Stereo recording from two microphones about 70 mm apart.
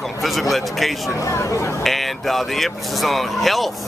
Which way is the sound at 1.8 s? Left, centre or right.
Centre.